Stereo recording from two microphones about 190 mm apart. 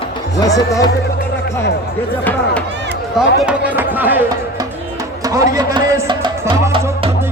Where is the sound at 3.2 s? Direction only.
5° right (ahead or behind).